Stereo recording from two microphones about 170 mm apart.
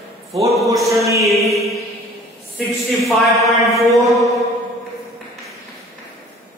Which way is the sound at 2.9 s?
Centre (ahead or behind).